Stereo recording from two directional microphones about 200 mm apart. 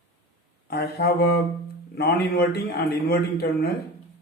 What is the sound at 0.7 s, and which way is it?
Speech, 50° left (ahead or behind).